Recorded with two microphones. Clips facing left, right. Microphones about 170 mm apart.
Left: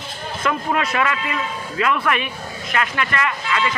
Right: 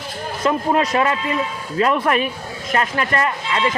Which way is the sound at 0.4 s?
35° right (ahead or behind).